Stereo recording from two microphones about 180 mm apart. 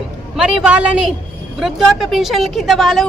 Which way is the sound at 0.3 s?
5° right (ahead or behind).